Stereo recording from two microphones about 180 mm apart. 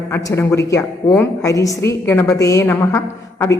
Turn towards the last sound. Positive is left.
turn(degrees=15)  # may be behind; listen again after turning